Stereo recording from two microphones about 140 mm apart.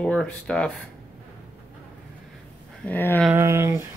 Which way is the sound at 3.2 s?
15° right (ahead or behind).